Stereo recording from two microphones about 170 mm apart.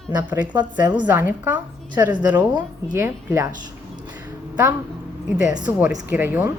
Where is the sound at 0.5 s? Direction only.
25° right (ahead or behind).